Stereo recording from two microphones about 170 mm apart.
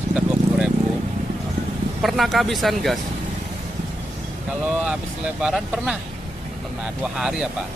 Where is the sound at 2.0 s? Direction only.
Centre (ahead or behind).